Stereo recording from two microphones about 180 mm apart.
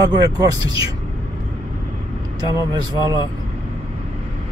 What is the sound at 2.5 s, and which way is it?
Speech, 20° right (ahead or behind).